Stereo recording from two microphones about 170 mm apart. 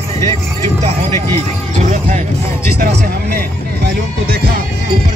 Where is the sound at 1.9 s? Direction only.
40° right (ahead or behind).